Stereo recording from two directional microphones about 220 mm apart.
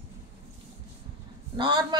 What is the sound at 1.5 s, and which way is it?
Speech, 20° right (ahead or behind).